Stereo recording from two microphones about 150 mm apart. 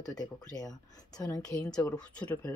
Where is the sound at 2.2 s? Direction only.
10° left (ahead or behind).